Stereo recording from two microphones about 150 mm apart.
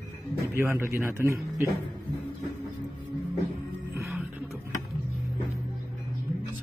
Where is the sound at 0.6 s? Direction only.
15° right (ahead or behind).